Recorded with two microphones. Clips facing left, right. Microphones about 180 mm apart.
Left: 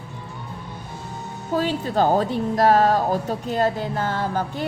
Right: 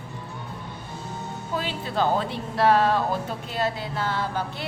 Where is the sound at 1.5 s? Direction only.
40° left (ahead or behind).